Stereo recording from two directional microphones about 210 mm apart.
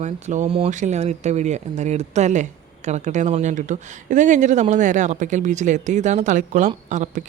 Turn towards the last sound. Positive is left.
turn(degrees=-35)  # may be behind; listen again after turning